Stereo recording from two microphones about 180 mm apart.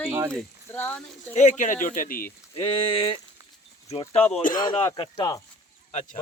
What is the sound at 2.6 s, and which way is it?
Speech, 30° left (ahead or behind).